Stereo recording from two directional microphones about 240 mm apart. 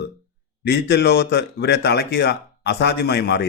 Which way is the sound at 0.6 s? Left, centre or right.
Left.